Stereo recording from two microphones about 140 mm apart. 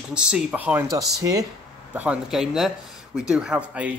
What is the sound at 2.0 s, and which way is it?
Speech, 5° right (ahead or behind).